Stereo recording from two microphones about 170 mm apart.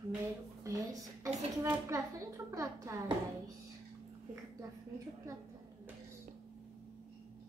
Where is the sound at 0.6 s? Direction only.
20° right (ahead or behind).